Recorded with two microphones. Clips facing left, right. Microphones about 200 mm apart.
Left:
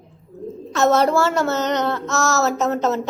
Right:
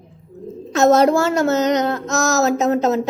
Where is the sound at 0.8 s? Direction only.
40° right (ahead or behind).